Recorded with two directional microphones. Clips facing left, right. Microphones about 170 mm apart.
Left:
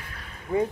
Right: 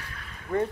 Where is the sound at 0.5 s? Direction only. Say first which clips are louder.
Left 2 dB; 20° left (ahead or behind).